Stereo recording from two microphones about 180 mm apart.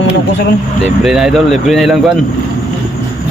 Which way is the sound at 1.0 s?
Centre (ahead or behind).